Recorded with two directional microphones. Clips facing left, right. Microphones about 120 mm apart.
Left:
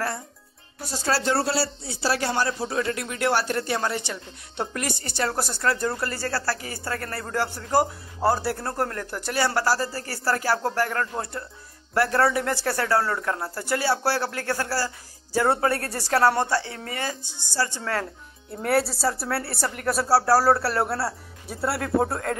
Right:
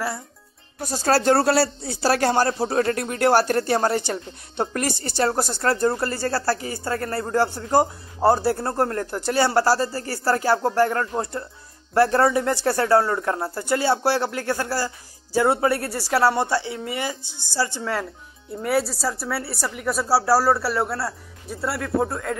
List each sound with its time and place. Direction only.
0.7 s speech: 45° right (ahead or behind); by 18.0 s 15° right (ahead or behind)
18.6 s speech: centre (ahead or behind)